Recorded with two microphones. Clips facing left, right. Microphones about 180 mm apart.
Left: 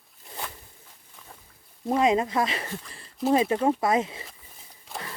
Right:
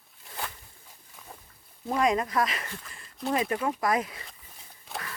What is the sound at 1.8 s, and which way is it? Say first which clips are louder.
Speech: left 3 dB; 25° left (ahead or behind).